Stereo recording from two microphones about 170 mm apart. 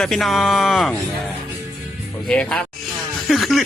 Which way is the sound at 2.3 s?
5° left (ahead or behind).